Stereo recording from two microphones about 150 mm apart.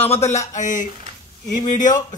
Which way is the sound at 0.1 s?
50° left (ahead or behind).